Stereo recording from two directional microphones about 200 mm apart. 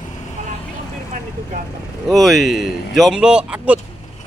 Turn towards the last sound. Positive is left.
turn(degrees=-5)  # may be behind; listen again after turning